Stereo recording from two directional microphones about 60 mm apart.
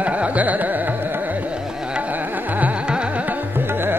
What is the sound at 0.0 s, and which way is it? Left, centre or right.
Carnatic music, right.